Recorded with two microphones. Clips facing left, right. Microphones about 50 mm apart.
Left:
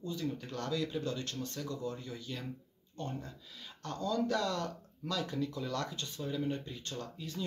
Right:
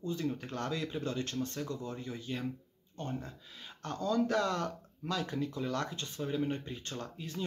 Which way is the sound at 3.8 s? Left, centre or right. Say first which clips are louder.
Right 2 dB; right.